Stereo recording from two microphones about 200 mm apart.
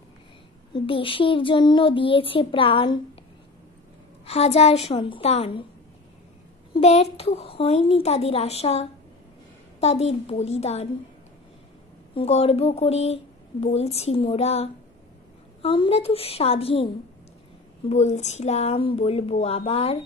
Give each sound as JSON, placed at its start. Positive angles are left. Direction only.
{"t": 0.7, "sound": "speech", "side_deg": 25}
{"t": 4.3, "sound": "speech", "side_deg": 30}
{"t": 6.8, "sound": "speech", "side_deg": 30}
{"t": 12.2, "sound": "speech", "side_deg": 30}